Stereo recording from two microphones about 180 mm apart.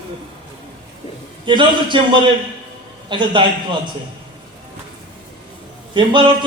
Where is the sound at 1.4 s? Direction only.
25° right (ahead or behind).